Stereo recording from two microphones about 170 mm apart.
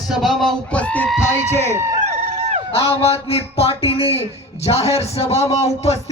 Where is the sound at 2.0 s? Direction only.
40° right (ahead or behind).